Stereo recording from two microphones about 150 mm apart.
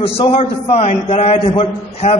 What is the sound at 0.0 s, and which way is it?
A man's voice, 45° left (ahead or behind).